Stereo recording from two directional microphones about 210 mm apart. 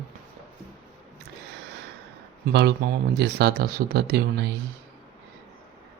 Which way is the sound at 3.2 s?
50° right (ahead or behind).